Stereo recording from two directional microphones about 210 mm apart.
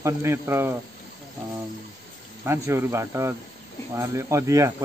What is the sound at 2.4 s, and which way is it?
Speech, 10° right (ahead or behind).